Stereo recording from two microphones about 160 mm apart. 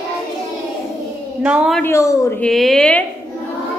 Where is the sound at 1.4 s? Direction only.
5° right (ahead or behind).